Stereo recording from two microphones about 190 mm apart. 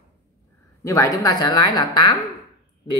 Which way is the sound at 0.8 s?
15° left (ahead or behind).